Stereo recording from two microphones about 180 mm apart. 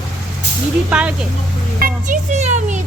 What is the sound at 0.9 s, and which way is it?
Speech, 5° right (ahead or behind).